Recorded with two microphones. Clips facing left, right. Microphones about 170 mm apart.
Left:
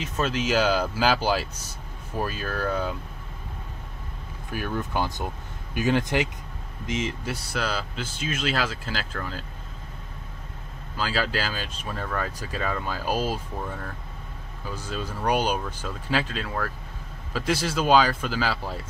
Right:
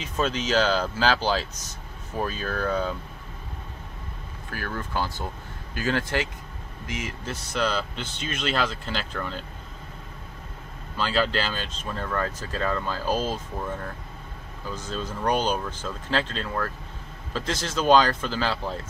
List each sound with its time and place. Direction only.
0.0 s speech: 5° left (ahead or behind)
4.5 s speech: 15° left (ahead or behind)
7.2 s speech: 5° left (ahead or behind)
11.0 s speech: 5° left (ahead or behind)
14.8 s speech: 10° left (ahead or behind)